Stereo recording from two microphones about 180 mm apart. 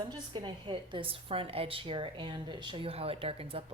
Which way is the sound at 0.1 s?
25° right (ahead or behind).